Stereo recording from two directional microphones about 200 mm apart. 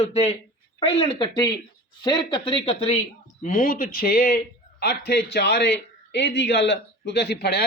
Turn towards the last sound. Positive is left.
turn(degrees=55)  # may be behind; listen again after turning